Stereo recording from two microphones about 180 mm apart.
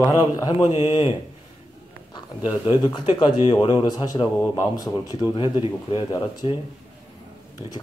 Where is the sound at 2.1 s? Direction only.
25° left (ahead or behind).